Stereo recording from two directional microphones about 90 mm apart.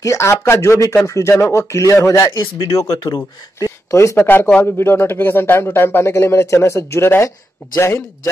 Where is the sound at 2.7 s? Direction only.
35° left (ahead or behind).